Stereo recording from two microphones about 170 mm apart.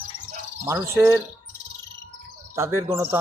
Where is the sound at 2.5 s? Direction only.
15° right (ahead or behind).